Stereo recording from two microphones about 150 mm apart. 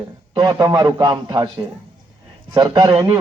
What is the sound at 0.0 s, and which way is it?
A man's voice, 30° right (ahead or behind).